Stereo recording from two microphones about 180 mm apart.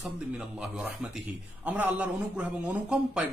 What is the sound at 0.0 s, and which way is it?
A man's voice, 5° right (ahead or behind).